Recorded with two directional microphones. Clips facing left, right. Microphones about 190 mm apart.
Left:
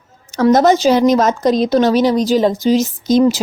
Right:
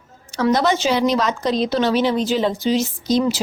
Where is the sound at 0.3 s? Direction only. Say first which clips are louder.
Left 7 dB; 45° left (ahead or behind).